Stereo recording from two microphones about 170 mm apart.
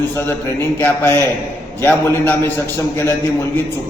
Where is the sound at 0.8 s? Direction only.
15° left (ahead or behind).